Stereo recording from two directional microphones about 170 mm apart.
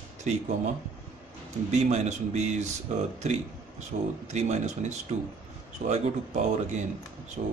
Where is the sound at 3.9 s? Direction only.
50° right (ahead or behind).